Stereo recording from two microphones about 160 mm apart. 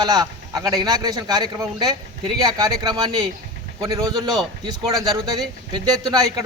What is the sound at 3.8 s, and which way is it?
Speech, 20° right (ahead or behind).